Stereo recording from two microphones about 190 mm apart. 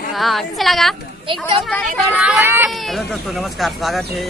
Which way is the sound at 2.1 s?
5° right (ahead or behind).